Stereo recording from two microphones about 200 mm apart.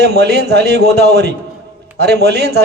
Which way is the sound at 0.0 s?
55° right (ahead or behind).